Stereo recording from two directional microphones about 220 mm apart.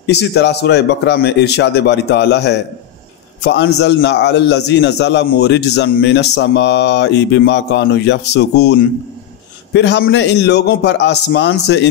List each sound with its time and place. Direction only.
0.0 s a man's voice: 50° left (ahead or behind)